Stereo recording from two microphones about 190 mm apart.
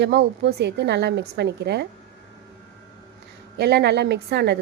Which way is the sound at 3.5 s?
60° right (ahead or behind).